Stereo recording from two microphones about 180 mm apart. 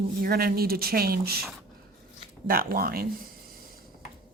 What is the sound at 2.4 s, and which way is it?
Speech, 55° right (ahead or behind).